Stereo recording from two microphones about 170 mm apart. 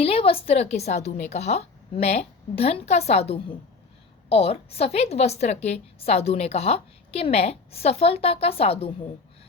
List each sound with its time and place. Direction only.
0.0 s a woman's voice: 35° left (ahead or behind)